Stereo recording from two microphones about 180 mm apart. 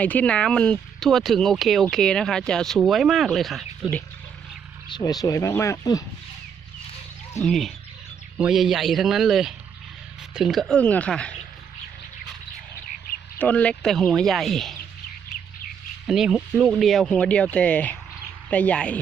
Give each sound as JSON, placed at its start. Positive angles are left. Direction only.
{"t": 0.0, "sound": "speech", "side_deg": 10}
{"t": 4.9, "sound": "speech", "side_deg": 20}
{"t": 7.4, "sound": "speech", "side_deg": 0}
{"t": 13.4, "sound": "speech", "side_deg": 10}
{"t": 16.0, "sound": "speech", "side_deg": -5}